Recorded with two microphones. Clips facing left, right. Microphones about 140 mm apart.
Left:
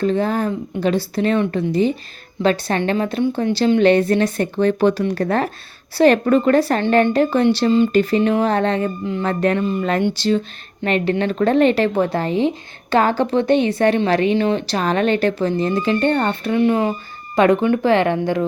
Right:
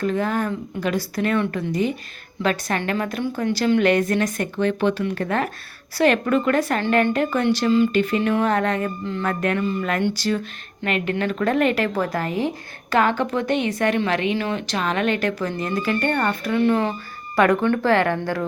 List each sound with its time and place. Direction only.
0.0 s a woman's voice: 30° left (ahead or behind)